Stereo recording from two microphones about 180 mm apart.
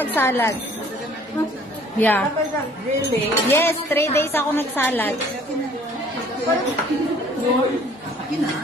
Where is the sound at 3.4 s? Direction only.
15° left (ahead or behind).